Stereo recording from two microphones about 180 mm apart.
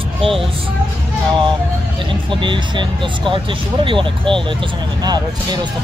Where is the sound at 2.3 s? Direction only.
25° right (ahead or behind).